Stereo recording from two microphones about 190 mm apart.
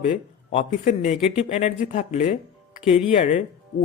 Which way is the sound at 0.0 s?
40° left (ahead or behind).